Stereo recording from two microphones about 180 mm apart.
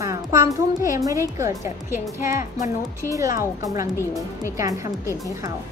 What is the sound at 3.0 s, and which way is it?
Speech, 20° right (ahead or behind).